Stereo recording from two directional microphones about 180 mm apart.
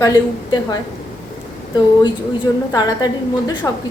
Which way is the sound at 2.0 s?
25° left (ahead or behind).